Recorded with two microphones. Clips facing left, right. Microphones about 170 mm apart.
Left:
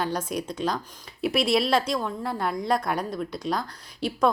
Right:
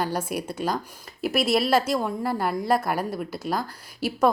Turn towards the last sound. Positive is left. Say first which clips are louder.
# right 1 dB
turn(degrees=-5)  # may be behind; listen again after turning